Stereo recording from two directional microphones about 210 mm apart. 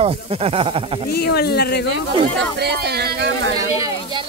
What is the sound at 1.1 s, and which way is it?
Speech, 50° left (ahead or behind).